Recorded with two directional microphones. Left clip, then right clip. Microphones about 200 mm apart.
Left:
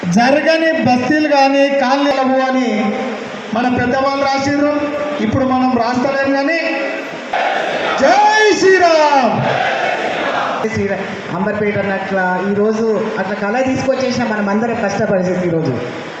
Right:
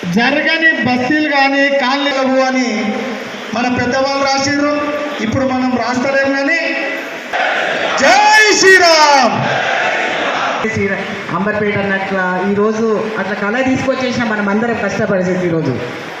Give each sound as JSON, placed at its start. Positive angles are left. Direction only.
{"t": 0.1, "sound": "a man's voice", "side_deg": 45}
{"t": 6.1, "sound": "music", "side_deg": 30}
{"t": 8.0, "sound": "a sound", "side_deg": 35}
{"t": 8.8, "sound": "a man's voice", "side_deg": 35}